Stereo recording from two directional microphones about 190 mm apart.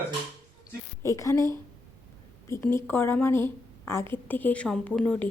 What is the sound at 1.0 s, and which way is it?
Speech, 15° left (ahead or behind).